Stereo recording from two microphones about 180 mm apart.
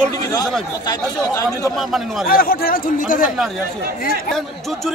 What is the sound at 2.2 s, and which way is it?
A man's voice, 55° left (ahead or behind).